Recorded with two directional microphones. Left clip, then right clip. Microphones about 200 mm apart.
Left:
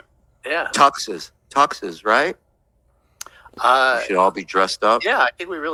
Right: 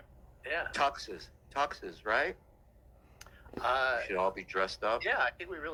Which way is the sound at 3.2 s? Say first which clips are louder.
Left 16 dB; 45° left (ahead or behind).